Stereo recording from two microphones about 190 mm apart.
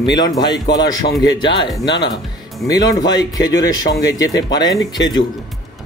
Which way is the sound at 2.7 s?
20° left (ahead or behind).